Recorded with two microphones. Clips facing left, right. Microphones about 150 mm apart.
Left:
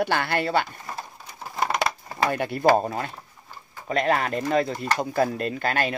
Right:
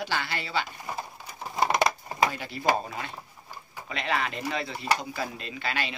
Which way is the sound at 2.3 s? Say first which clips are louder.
Left 8 dB; 55° left (ahead or behind).